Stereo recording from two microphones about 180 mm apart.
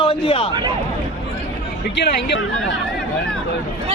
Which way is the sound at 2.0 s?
70° left (ahead or behind).